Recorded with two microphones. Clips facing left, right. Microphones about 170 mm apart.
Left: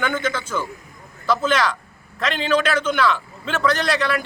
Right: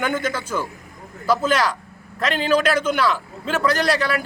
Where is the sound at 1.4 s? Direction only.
35° right (ahead or behind).